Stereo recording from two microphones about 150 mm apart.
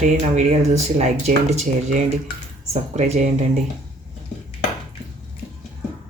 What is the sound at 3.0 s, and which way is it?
Speech, 50° right (ahead or behind).